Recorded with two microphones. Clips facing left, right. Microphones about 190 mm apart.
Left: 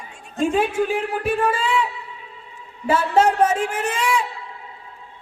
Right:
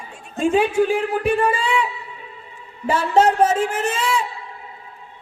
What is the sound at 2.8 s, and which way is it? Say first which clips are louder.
A man's voice: right 1 dB; 5° left (ahead or behind).